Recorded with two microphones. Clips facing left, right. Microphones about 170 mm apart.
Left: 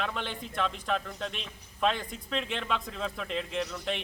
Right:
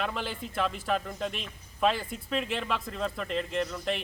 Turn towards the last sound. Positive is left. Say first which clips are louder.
# right 2 dB
turn(degrees=0)  # may be behind; listen again after turning